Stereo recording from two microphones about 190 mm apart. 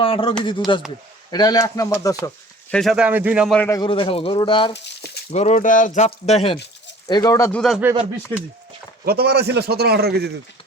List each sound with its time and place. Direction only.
0.0 s speech: 30° left (ahead or behind)
2.2 s speech: 5° left (ahead or behind)
3.6 s speech: 15° left (ahead or behind)
3.8 s speech: 25° left (ahead or behind)
4.7 s a sound: 65° left (ahead or behind)
5.3 s speech: 35° left (ahead or behind)
7.1 s speech: 20° left (ahead or behind)
7.6 s speech: centre (ahead or behind)
9.0 s a man's voice: 55° right (ahead or behind)